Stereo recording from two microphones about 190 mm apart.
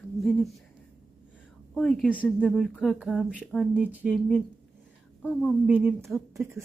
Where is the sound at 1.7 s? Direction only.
5° left (ahead or behind).